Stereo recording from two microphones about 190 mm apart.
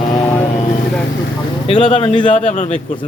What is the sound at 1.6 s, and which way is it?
Speech, 30° left (ahead or behind).